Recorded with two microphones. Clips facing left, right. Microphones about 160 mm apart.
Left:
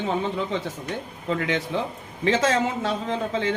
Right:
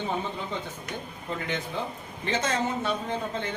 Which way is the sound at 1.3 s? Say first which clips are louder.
Left 7 dB; 90° left.